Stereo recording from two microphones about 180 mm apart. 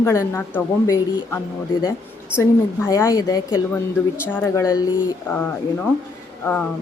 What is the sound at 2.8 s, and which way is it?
A woman's voice, 20° left (ahead or behind).